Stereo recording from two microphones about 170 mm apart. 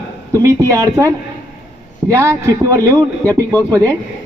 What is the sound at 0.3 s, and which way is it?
A man's voice, 20° right (ahead or behind).